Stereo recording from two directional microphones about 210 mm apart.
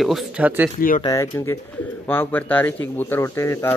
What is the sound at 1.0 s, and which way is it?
Speech, 15° left (ahead or behind).